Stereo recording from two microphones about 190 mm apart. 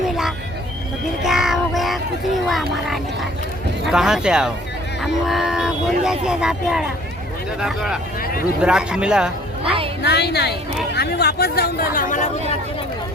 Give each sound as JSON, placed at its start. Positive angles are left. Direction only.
{"t": 1.2, "sound": "a sound", "side_deg": 0}
{"t": 3.8, "sound": "speech", "side_deg": -5}
{"t": 8.2, "sound": "speech", "side_deg": 50}
{"t": 8.6, "sound": "speech", "side_deg": -5}
{"t": 10.0, "sound": "speech", "side_deg": 60}
{"t": 11.9, "sound": "speech", "side_deg": 40}